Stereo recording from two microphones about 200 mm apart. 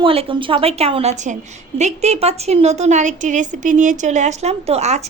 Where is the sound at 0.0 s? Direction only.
25° right (ahead or behind).